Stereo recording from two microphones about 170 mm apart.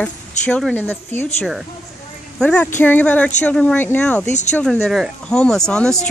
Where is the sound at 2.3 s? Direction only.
5° left (ahead or behind).